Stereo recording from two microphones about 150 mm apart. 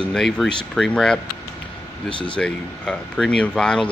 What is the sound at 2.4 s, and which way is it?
Speech, 5° left (ahead or behind).